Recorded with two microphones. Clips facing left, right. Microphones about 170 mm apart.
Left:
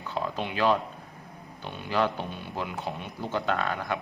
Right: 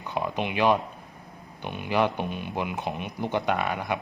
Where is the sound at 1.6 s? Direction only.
15° right (ahead or behind).